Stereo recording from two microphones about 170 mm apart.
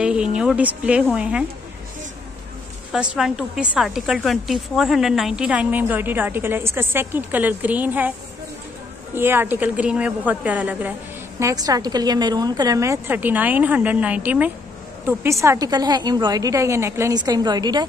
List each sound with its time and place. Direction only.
0.0 s a woman's voice: 5° right (ahead or behind)
2.9 s a woman's voice: 5° right (ahead or behind)
9.1 s a woman's voice: 15° right (ahead or behind)